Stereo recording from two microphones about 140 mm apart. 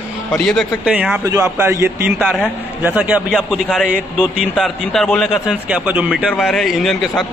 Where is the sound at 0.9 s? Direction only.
5° right (ahead or behind).